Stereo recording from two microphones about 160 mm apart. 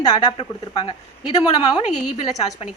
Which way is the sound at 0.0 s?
25° left (ahead or behind).